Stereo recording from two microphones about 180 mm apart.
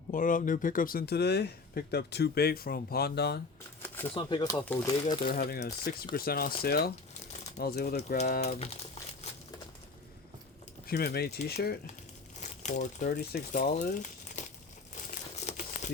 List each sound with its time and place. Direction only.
0.1 s speech: 50° left (ahead or behind); by 3.4 s 65° left (ahead or behind)
4.1 s speech: 25° left (ahead or behind)
5.2 s speech: 55° left (ahead or behind)
8.5 s speech: 35° left (ahead or behind)
9.2 s crumpling: 35° left (ahead or behind)
10.8 s speech: 60° left (ahead or behind)
12.4 s speech: 40° left (ahead or behind); by 13.7 s 60° left (ahead or behind)
13.7 s crumpling: 45° left (ahead or behind)